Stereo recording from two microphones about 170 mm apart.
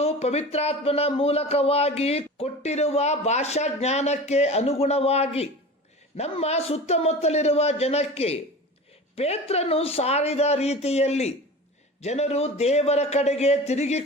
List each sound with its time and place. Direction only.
0.0 s speech: 40° left (ahead or behind)